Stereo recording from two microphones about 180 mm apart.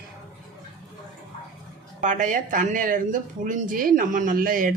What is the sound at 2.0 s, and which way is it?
Speech, 45° right (ahead or behind).